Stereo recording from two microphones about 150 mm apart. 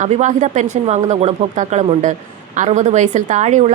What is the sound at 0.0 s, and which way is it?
A woman's voice, 55° right (ahead or behind).